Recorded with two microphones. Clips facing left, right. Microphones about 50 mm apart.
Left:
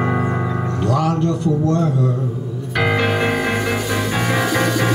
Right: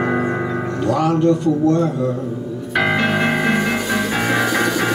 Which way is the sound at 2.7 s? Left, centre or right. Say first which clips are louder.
Right 1 dB; centre.